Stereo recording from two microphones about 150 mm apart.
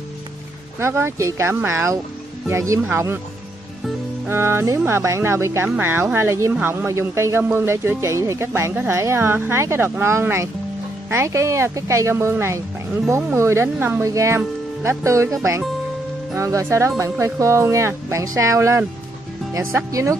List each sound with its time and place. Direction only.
0.7 s speech: 15° right (ahead or behind)
4.3 s speech: 15° right (ahead or behind)